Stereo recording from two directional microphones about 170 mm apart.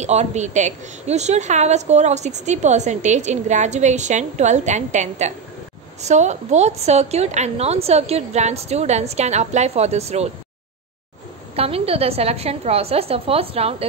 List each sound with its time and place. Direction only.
0.0 s a woman's voice: 40° right (ahead or behind)
11.5 s a woman's voice: 35° right (ahead or behind)